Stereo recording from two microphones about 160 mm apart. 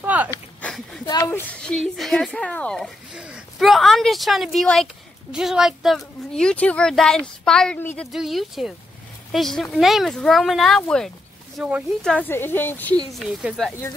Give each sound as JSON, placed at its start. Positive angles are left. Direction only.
{"t": 0.0, "sound": "a sound", "side_deg": -10}
{"t": 0.6, "sound": "a sound", "side_deg": 5}
{"t": 1.0, "sound": "a sound", "side_deg": 25}
{"t": 1.4, "sound": "a woman's voice", "side_deg": 5}
{"t": 3.2, "sound": "a woman's voice", "side_deg": -5}
{"t": 8.1, "sound": "a woman's voice", "side_deg": 0}
{"t": 11.5, "sound": "speech", "side_deg": -10}
{"t": 12.0, "sound": "a woman's voice", "side_deg": 5}
{"t": 12.3, "sound": "speech", "side_deg": 15}
{"t": 13.1, "sound": "a woman's voice", "side_deg": 0}